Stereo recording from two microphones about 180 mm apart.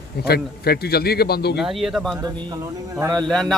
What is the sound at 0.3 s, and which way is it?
A man's voice, 60° left (ahead or behind).